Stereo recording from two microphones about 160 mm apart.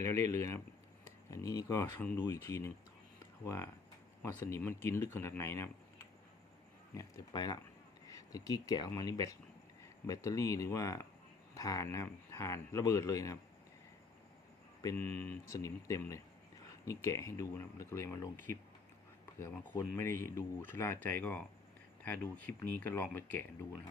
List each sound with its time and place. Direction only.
0.0 s speech: 15° left (ahead or behind)
6.9 s speech: 25° left (ahead or behind)
14.9 s speech: 15° left (ahead or behind)